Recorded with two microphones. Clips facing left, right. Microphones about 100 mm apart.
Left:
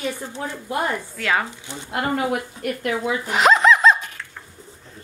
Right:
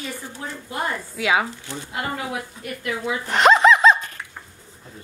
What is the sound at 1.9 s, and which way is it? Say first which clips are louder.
Speech: left 6 dB; 55° left (ahead or behind).